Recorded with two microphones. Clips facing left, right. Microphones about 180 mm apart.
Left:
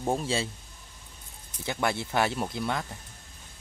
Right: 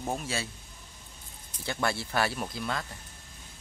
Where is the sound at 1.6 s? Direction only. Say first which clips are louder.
Left 2 dB; 15° left (ahead or behind).